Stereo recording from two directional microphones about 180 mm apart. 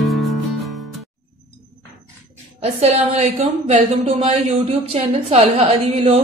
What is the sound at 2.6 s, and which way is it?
A woman's voice, 35° right (ahead or behind).